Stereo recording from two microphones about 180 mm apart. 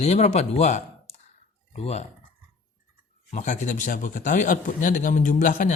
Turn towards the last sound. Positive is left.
turn(degrees=45)  # may be behind; listen again after turning